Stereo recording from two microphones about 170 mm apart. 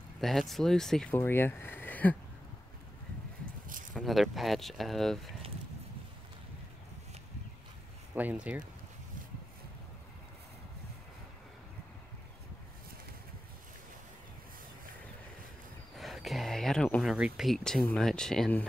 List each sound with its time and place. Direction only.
0.2 s speech: centre (ahead or behind)
1.1 s speech: 15° left (ahead or behind)
3.4 s a sound: 55° right (ahead or behind)
3.9 s speech: centre (ahead or behind)
8.1 s speech: 10° right (ahead or behind)
16.0 s speech: centre (ahead or behind)